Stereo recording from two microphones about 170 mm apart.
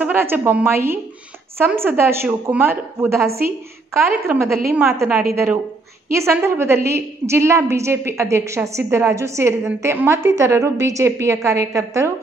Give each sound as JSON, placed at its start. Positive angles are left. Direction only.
{"t": 0.0, "sound": "a woman's voice", "side_deg": -10}